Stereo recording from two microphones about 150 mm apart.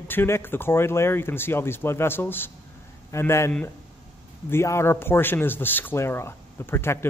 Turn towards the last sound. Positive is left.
turn(degrees=15)  # may be behind; listen again after turning